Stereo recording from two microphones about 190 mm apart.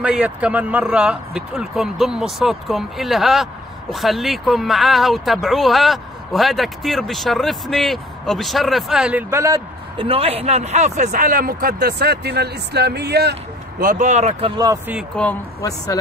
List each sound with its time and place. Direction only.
0.0 s speech: 5° right (ahead or behind)
10.0 s speech: 30° right (ahead or behind)
14.6 s speech: 15° right (ahead or behind)
15.0 s speech: 5° left (ahead or behind)